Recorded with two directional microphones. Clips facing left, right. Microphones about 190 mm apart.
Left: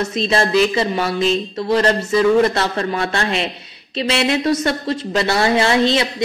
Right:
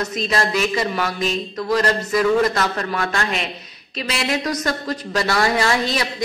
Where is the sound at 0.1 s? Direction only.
30° left (ahead or behind).